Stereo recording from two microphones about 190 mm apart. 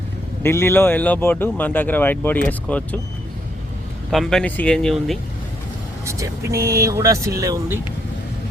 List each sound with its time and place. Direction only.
0.4 s speech: 10° left (ahead or behind)
4.1 s speech: centre (ahead or behind)
6.1 s speech: 15° right (ahead or behind)